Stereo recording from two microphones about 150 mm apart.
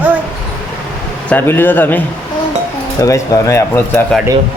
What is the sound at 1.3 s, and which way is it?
Speech, 15° left (ahead or behind).